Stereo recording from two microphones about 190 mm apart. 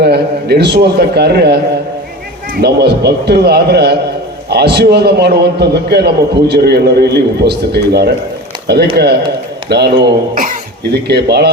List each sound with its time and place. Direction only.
0.0 s a man's voice: 60° right (ahead or behind)
2.6 s a man's voice: 60° right (ahead or behind)
11.1 s a man's voice: 60° right (ahead or behind)